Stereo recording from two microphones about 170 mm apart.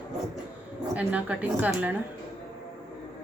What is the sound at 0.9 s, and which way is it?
A woman's voice, 10° right (ahead or behind).